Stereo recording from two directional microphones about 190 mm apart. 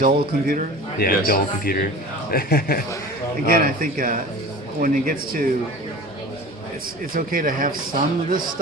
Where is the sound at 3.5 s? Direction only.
45° right (ahead or behind).